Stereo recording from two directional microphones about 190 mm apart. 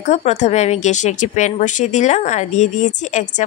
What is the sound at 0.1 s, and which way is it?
Speech, 35° left (ahead or behind).